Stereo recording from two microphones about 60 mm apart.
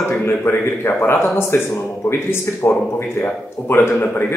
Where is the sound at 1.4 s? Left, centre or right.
Left.